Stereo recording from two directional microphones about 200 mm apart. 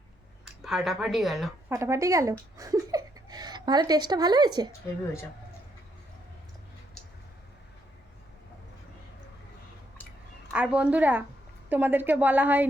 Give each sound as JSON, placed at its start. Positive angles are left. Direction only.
{"t": 0.4, "sound": "speech", "side_deg": 0}
{"t": 1.7, "sound": "a woman's voice", "side_deg": -15}
{"t": 10.5, "sound": "a woman's voice", "side_deg": -5}